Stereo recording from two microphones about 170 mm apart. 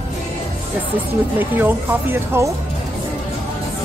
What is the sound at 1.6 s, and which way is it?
Speech, 15° right (ahead or behind).